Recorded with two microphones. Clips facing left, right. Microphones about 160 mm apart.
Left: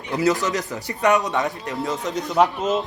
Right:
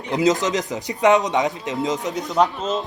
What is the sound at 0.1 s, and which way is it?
Speech, 20° right (ahead or behind).